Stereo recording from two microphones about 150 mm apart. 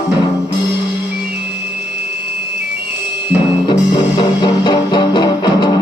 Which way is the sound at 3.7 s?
30° left (ahead or behind).